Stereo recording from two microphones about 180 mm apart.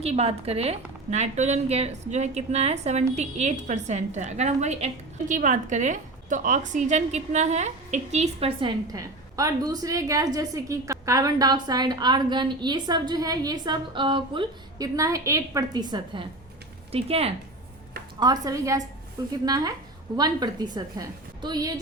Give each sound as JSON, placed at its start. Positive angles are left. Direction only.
{"t": 0.0, "sound": "a woman's voice", "side_deg": -35}
{"t": 8.9, "sound": "a woman's voice", "side_deg": -20}
{"t": 18.2, "sound": "a woman's voice", "side_deg": -20}